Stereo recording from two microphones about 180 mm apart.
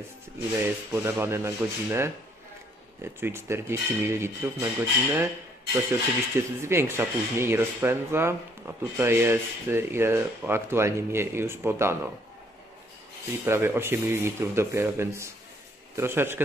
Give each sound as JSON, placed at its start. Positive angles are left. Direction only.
{"t": 0.9, "sound": "speech", "side_deg": -15}
{"t": 13.5, "sound": "speech", "side_deg": -15}